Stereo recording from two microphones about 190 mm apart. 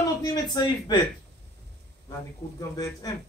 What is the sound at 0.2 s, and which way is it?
Speech, 20° left (ahead or behind).